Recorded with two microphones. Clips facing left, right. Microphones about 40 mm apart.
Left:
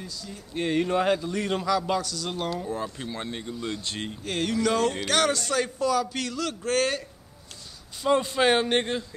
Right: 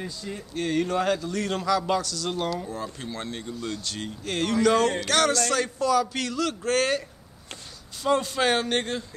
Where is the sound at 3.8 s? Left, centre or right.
Left.